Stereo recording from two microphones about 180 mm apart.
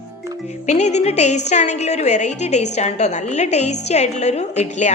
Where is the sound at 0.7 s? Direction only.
40° left (ahead or behind).